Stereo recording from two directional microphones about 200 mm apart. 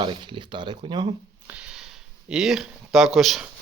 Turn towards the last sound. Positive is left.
turn(degrees=0)  # may be behind; listen again after turning